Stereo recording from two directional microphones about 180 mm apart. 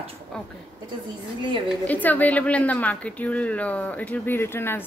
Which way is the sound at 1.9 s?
10° left (ahead or behind).